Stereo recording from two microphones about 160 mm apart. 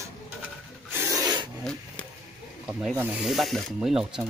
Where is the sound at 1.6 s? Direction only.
5° left (ahead or behind).